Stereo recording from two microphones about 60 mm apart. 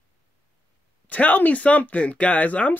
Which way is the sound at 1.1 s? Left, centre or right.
Left.